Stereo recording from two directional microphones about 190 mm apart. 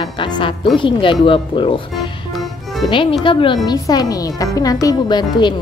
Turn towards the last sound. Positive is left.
turn(degrees=25)  # may be behind; listen again after turning